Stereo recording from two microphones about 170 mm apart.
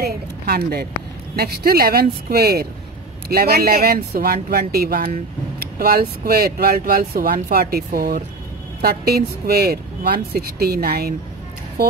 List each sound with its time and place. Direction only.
0.0 s speech: 65° right (ahead or behind)